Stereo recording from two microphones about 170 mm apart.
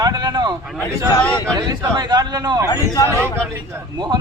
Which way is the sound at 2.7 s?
20° left (ahead or behind).